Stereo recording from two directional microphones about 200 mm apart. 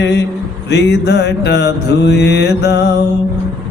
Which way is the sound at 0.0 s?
55° left (ahead or behind).